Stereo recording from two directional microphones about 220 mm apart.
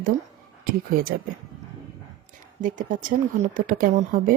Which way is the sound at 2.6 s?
35° right (ahead or behind).